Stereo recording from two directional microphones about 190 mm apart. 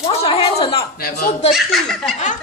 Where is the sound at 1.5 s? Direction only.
Centre (ahead or behind).